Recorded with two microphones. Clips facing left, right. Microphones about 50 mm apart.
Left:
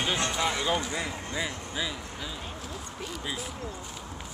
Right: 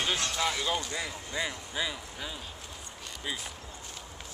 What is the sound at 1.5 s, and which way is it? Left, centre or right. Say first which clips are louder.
Speech: left 1 dB; centre.